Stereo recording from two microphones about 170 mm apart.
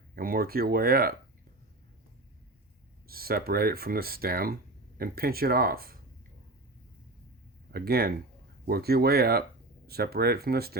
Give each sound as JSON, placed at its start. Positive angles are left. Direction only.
{"t": 0.2, "sound": "speech", "side_deg": -60}
{"t": 3.1, "sound": "speech", "side_deg": -60}
{"t": 7.7, "sound": "speech", "side_deg": -65}